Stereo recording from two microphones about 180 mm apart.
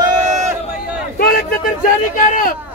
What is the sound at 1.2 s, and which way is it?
Speech, 60° left (ahead or behind).